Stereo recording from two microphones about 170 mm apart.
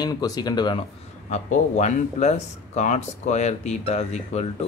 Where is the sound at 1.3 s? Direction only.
45° left (ahead or behind).